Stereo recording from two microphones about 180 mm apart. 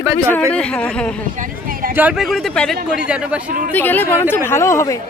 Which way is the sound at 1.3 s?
50° right (ahead or behind).